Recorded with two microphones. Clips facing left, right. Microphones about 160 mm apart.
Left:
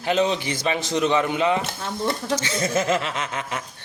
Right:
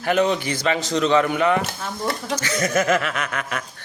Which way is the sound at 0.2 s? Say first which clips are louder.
Right 2 dB; 20° left (ahead or behind).